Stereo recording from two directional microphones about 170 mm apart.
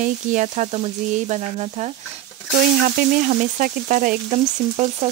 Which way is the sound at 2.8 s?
55° right (ahead or behind).